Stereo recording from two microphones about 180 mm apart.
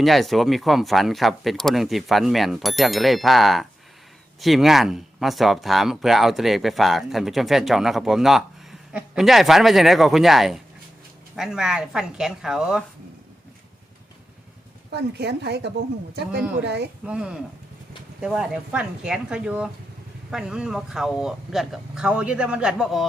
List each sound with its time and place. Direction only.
0.0 s speech: centre (ahead or behind)
14.8 s speech: 65° right (ahead or behind)
17.1 s speech: 5° right (ahead or behind)